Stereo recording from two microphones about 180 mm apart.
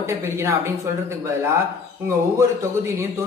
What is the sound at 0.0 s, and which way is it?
Speech, 15° right (ahead or behind).